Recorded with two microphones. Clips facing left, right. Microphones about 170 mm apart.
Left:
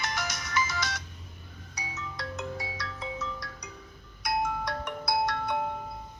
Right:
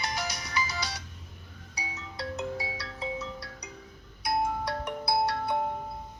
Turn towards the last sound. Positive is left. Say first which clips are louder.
# right 1 dB
turn(degrees=-35)  # may be behind; listen again after turning